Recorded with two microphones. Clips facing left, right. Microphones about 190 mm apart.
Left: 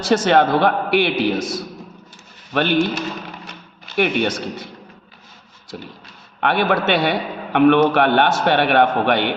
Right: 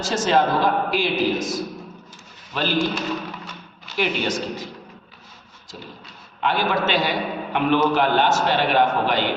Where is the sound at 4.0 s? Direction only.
60° left (ahead or behind).